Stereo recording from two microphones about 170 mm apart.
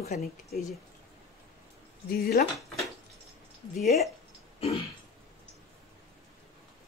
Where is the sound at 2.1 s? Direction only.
60° left (ahead or behind).